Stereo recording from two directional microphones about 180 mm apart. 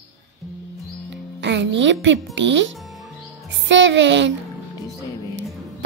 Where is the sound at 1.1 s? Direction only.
75° right (ahead or behind).